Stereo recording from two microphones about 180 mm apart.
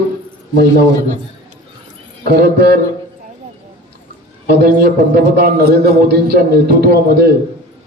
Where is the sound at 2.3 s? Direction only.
65° right (ahead or behind).